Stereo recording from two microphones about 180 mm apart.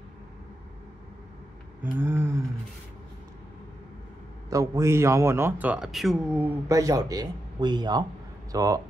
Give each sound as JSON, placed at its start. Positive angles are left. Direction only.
{"t": 1.8, "sound": "a sound", "side_deg": -10}
{"t": 4.5, "sound": "a man's voice", "side_deg": -15}
{"t": 6.7, "sound": "speech", "side_deg": -20}